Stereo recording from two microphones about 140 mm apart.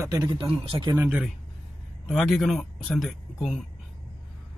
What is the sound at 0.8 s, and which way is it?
Speech, 20° right (ahead or behind).